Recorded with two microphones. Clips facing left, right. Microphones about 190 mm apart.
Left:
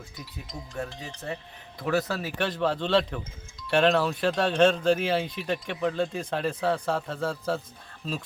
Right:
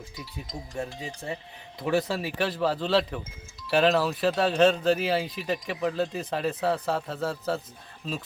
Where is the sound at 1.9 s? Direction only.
25° right (ahead or behind).